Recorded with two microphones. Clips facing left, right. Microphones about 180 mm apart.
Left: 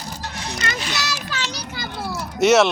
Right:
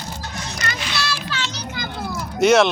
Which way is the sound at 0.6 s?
30° left (ahead or behind).